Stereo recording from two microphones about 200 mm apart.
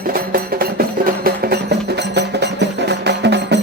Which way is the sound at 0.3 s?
50° right (ahead or behind).